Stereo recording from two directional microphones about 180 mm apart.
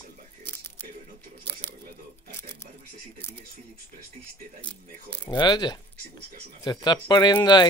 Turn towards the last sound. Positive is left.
turn(degrees=25)  # may be behind; listen again after turning